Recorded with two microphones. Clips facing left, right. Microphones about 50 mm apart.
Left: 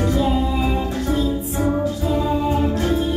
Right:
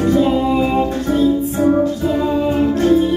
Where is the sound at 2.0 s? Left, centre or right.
Right.